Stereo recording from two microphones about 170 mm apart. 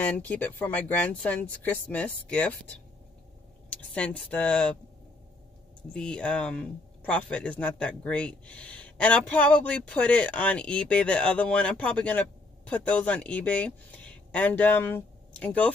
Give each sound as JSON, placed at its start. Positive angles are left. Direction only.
{"t": 0.0, "sound": "speech", "side_deg": 10}
{"t": 3.7, "sound": "speech", "side_deg": 5}
{"t": 5.9, "sound": "speech", "side_deg": 5}